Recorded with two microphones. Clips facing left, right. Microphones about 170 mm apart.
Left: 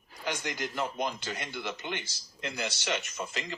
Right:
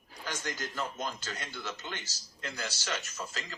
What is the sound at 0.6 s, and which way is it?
Speech, 15° left (ahead or behind).